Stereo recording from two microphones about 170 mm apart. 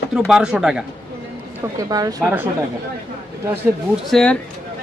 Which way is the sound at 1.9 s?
20° right (ahead or behind).